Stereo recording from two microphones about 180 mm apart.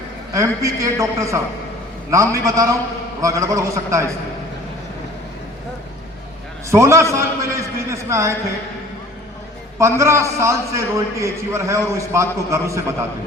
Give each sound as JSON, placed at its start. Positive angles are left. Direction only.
{"t": 0.3, "sound": "a man's voice", "side_deg": -15}
{"t": 6.7, "sound": "a man's voice", "side_deg": -15}
{"t": 9.7, "sound": "a man's voice", "side_deg": -15}